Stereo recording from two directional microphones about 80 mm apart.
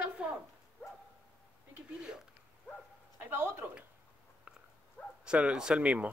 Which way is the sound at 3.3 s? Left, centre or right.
Right.